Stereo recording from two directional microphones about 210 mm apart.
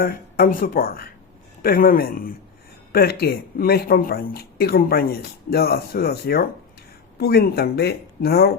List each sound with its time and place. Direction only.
0.0 s speech: 40° left (ahead or behind)